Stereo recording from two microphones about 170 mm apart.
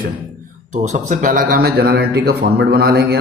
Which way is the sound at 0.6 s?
45° right (ahead or behind).